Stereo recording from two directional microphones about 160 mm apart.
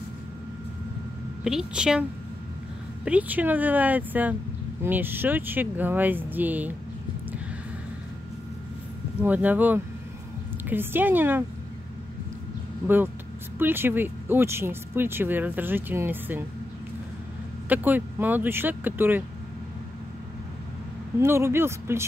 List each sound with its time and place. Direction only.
1.4 s a woman's voice: 5° right (ahead or behind)
3.1 s speech: 10° right (ahead or behind)
9.2 s speech: 10° right (ahead or behind)
12.8 s speech: 15° right (ahead or behind)
17.6 s speech: 10° right (ahead or behind)
21.2 s speech: 15° right (ahead or behind)